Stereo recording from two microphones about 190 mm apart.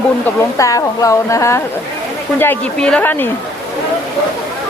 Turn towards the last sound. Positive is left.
turn(degrees=10)  # may be behind; listen again after turning